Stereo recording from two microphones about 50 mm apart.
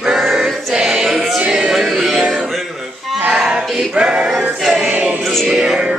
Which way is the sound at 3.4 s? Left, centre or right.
Centre.